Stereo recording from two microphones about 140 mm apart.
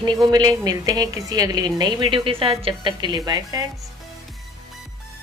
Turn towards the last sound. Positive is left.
turn(degrees=-25)  # may be behind; listen again after turning